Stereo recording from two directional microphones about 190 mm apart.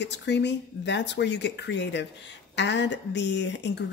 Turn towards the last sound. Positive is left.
turn(degrees=65)  # may be behind; listen again after turning